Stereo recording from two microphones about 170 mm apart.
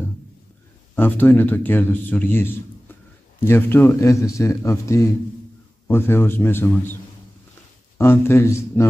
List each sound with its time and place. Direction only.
0.9 s speech: 10° left (ahead or behind)
8.0 s speech: 15° left (ahead or behind)